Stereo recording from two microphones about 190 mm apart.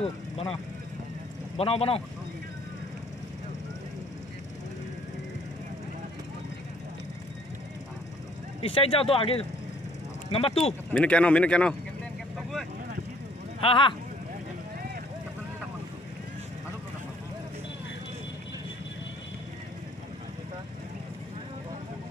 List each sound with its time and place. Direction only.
1.6 s speech: 30° left (ahead or behind)
8.6 s speech: 30° left (ahead or behind)
10.9 s speech: 5° left (ahead or behind)
12.4 s vehicle: centre (ahead or behind)
13.6 s speech: 30° left (ahead or behind)